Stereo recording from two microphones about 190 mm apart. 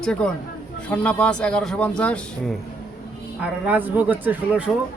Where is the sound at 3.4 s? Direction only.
10° right (ahead or behind).